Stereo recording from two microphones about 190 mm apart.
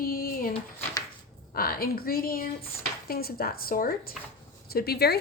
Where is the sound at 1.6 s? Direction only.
50° left (ahead or behind).